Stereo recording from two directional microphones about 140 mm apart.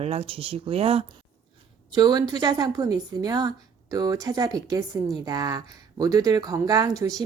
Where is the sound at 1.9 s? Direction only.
30° right (ahead or behind).